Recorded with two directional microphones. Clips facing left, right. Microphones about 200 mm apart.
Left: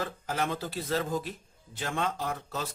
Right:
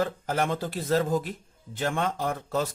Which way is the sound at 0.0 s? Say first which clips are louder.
Right 5 dB; 45° right (ahead or behind).